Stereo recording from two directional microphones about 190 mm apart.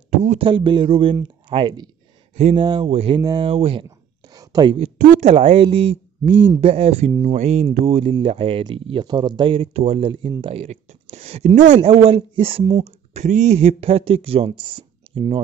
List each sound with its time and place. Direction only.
0.1 s speech: 40° right (ahead or behind)
0.5 s speech: 25° right (ahead or behind)
2.6 s speech: 20° right (ahead or behind)
2.9 s speech: 30° right (ahead or behind)
3.2 s speech: 20° right (ahead or behind)
4.3 s a sound: 20° right (ahead or behind)
4.7 s speech: 40° right (ahead or behind)